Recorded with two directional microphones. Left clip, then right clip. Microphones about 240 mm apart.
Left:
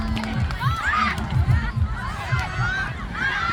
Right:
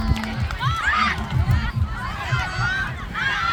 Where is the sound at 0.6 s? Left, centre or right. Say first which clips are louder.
Right 2 dB; right.